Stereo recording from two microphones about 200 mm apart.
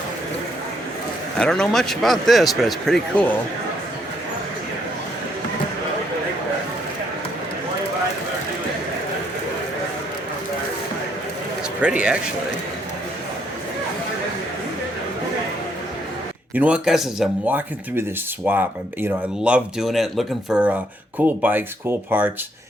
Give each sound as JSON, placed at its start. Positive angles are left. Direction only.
{"t": 1.4, "sound": "speech", "side_deg": 5}
{"t": 11.8, "sound": "speech", "side_deg": -5}
{"t": 16.6, "sound": "speech", "side_deg": -5}